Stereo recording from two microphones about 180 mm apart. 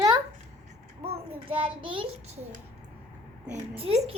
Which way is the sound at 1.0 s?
30° right (ahead or behind).